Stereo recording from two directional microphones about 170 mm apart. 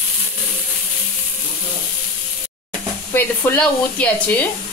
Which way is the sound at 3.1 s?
10° left (ahead or behind).